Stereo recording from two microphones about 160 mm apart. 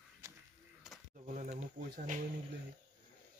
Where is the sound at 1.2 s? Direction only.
50° right (ahead or behind).